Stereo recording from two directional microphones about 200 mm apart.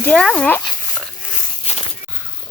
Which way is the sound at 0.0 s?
5° left (ahead or behind).